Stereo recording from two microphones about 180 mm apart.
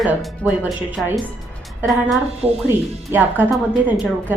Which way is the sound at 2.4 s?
35° right (ahead or behind).